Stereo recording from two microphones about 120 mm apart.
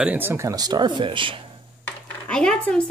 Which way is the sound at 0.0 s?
15° right (ahead or behind).